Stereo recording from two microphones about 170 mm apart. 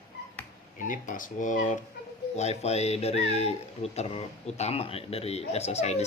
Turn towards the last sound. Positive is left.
turn(degrees=40)  # may be behind; listen again after turning